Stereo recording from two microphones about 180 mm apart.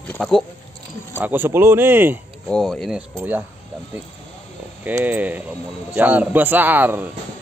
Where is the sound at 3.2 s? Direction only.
10° right (ahead or behind).